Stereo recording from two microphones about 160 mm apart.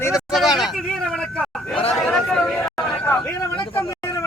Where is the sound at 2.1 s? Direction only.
5° left (ahead or behind).